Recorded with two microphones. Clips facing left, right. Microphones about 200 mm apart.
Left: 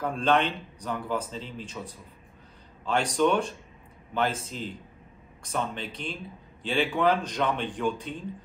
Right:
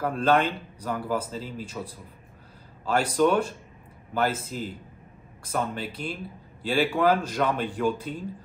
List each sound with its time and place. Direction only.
0.0 s speech: 5° right (ahead or behind)